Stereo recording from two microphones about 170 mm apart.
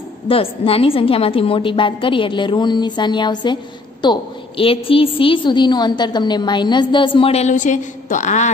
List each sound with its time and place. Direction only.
0.3 s a woman's voice: 35° left (ahead or behind)